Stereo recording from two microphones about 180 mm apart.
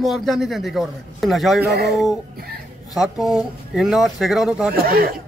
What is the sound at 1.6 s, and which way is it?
Speech, 65° right (ahead or behind).